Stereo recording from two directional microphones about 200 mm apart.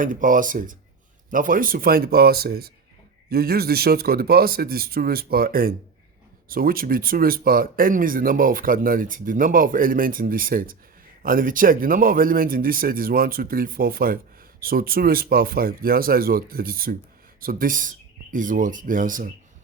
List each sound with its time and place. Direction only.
0.0 s speech: 40° right (ahead or behind)